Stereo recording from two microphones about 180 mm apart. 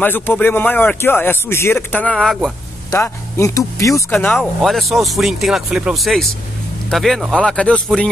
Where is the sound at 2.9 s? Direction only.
15° left (ahead or behind).